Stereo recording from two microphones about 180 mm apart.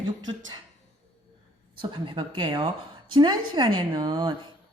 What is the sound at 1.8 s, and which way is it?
A woman's voice, 30° right (ahead or behind).